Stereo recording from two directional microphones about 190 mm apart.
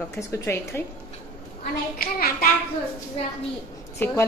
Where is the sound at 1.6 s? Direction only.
50° left (ahead or behind).